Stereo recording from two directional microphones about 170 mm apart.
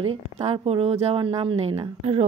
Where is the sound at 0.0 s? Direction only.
35° right (ahead or behind).